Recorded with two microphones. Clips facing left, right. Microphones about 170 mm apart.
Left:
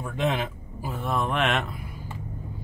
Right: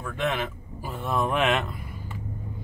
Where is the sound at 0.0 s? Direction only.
15° left (ahead or behind).